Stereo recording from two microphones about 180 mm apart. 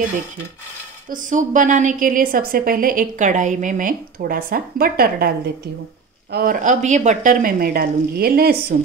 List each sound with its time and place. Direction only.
1.0 s a woman's voice: 45° right (ahead or behind)
6.3 s a woman's voice: 50° right (ahead or behind)